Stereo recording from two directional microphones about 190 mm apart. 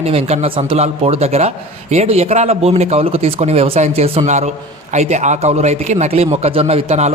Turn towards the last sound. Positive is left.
turn(degrees=-35)  # may be behind; listen again after turning